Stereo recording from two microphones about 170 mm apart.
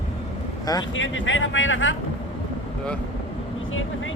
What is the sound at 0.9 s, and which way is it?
Speech, 90° left.